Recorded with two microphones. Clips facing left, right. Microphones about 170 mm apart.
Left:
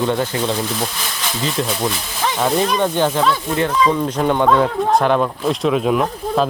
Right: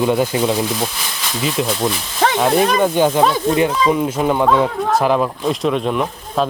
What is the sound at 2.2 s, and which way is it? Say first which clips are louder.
Snake: right 5 dB; 70° right (ahead or behind).